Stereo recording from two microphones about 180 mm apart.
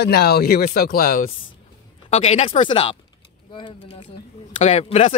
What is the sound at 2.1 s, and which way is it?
Speech, 35° left (ahead or behind).